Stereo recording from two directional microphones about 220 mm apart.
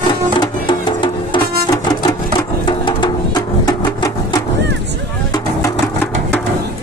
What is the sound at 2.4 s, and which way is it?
Music, 20° left (ahead or behind).